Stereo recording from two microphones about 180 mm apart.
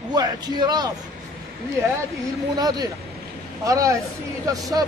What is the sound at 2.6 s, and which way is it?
A man's voice, 20° right (ahead or behind).